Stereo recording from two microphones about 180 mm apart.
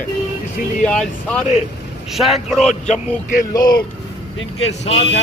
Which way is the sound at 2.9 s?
45° left (ahead or behind).